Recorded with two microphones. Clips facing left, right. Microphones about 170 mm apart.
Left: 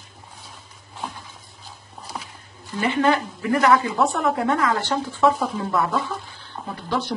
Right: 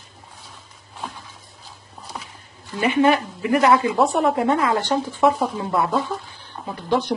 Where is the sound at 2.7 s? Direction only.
15° right (ahead or behind).